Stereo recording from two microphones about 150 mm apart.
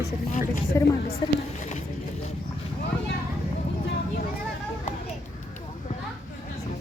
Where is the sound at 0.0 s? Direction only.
60° left (ahead or behind).